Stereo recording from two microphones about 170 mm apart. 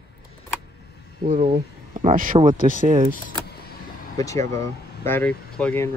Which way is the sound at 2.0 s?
50° right (ahead or behind).